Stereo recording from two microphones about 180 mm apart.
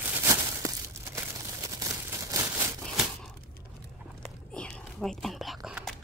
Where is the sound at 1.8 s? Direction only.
20° right (ahead or behind).